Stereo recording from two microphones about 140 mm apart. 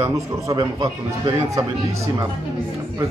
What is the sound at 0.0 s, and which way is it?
A man's voice, 25° right (ahead or behind).